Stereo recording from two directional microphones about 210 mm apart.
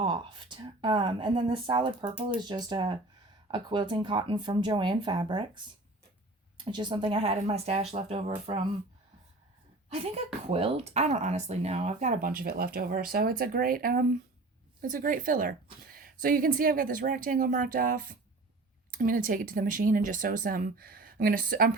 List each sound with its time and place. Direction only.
0.0 s speech: 25° right (ahead or behind)
6.7 s speech: 20° right (ahead or behind)
9.9 s speech: 30° right (ahead or behind)